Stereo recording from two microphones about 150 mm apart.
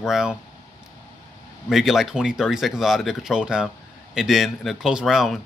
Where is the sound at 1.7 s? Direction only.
Centre (ahead or behind).